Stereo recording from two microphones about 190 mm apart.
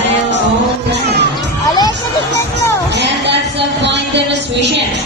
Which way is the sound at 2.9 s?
65° right (ahead or behind).